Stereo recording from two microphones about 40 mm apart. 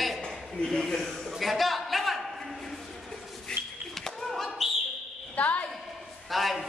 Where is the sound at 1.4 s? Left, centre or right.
Centre.